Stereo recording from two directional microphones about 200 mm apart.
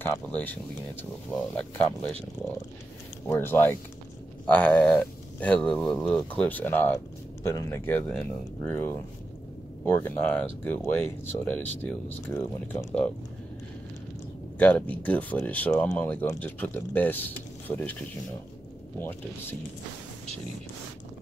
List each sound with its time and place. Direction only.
0.0 s speech: 10° left (ahead or behind)
3.3 s speech: 10° left (ahead or behind)
14.6 s speech: 5° left (ahead or behind)